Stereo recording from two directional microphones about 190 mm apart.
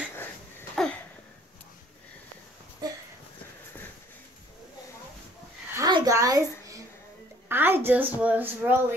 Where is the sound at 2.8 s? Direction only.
20° right (ahead or behind).